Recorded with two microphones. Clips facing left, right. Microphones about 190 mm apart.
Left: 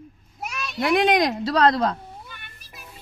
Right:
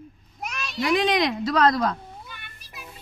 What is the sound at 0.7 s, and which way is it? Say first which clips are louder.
Speech: left 3 dB; 55° left (ahead or behind).